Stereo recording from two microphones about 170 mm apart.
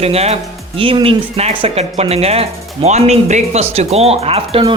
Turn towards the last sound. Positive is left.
turn(degrees=-30)  # may be behind; listen again after turning